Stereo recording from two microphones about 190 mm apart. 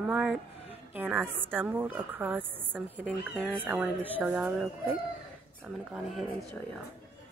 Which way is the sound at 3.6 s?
10° right (ahead or behind).